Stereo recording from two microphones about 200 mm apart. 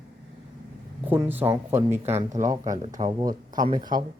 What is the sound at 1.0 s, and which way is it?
Speech, 10° right (ahead or behind).